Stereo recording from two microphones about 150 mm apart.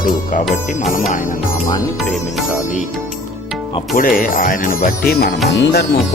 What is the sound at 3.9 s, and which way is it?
Speech, 65° left (ahead or behind).